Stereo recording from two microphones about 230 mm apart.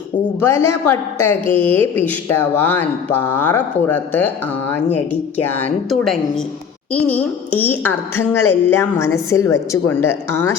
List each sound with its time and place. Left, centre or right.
0.3 s a woman's voice: centre
5.4 s a woman's voice: centre